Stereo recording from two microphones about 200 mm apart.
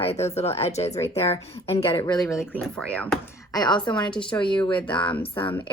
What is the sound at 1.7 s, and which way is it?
Speech, 15° left (ahead or behind).